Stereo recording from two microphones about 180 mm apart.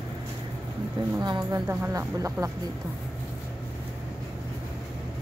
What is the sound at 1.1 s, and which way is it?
Speech, 20° right (ahead or behind).